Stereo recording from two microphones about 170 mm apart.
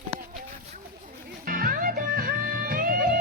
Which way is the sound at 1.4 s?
55° right (ahead or behind).